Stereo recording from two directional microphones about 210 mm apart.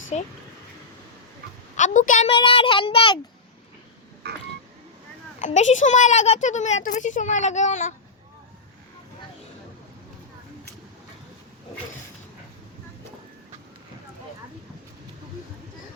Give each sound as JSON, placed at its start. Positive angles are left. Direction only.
{"t": 1.7, "sound": "a woman's voice", "side_deg": 35}
{"t": 4.2, "sound": "telephone dialing", "side_deg": -50}
{"t": 5.4, "sound": "speech", "side_deg": 35}